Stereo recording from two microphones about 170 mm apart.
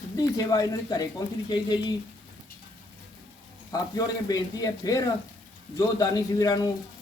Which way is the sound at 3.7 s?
20° left (ahead or behind).